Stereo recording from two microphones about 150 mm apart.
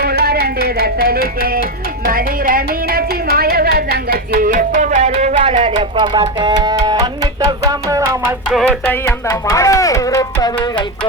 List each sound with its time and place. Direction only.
0.0 s a sound: 90° right
1.4 s music: 85° right
2.0 s a woman's voice: 75° right (ahead or behind); by 7.1 s 30° right (ahead or behind)
7.7 s music: 20° right (ahead or behind)
8.4 s music: 5° left (ahead or behind)
9.2 s speech: 20° left (ahead or behind)